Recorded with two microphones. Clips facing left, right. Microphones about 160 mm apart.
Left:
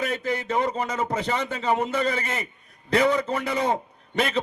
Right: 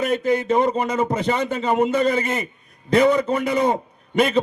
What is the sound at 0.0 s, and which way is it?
A man's voice, 20° right (ahead or behind).